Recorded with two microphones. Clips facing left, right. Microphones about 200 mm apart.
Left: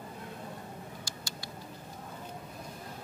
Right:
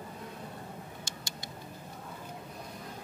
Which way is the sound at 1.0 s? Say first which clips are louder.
Even; 20° right (ahead or behind).